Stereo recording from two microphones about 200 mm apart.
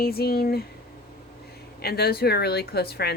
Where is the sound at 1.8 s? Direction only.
50° left (ahead or behind).